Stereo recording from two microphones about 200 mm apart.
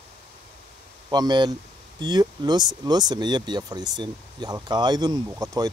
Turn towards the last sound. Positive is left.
turn(degrees=-20)  # may be behind; listen again after turning